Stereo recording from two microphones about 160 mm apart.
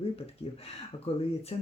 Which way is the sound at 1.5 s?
35° left (ahead or behind).